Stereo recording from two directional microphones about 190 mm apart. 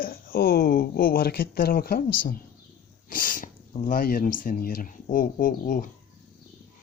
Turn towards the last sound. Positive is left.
turn(degrees=45)  # may be behind; listen again after turning